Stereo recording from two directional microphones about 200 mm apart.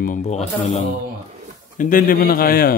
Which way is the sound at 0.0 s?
40° left (ahead or behind).